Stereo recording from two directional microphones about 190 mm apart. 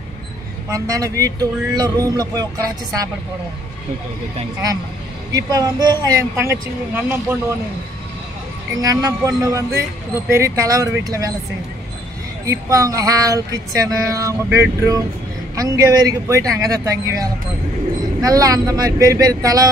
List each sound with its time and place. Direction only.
0.7 s speech: 15° right (ahead or behind)
5.3 s speech: 20° right (ahead or behind)
8.7 s speech: 20° right (ahead or behind)
12.4 s speech: 15° right (ahead or behind)